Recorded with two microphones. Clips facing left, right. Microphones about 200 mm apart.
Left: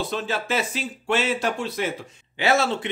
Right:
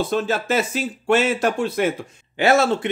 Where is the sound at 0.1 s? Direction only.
45° right (ahead or behind).